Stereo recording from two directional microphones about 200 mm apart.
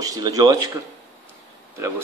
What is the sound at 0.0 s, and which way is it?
Speech, 15° right (ahead or behind).